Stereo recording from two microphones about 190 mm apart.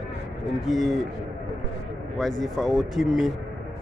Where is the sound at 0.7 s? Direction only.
Centre (ahead or behind).